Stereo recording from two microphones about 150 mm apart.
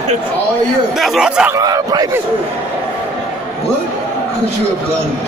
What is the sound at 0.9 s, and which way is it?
Speech, centre (ahead or behind).